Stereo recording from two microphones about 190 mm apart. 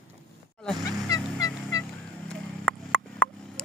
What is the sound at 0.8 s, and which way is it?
Fowl, 20° left (ahead or behind).